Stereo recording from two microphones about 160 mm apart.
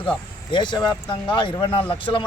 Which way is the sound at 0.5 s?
30° left (ahead or behind).